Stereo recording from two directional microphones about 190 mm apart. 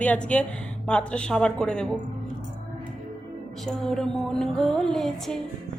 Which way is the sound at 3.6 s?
5° left (ahead or behind).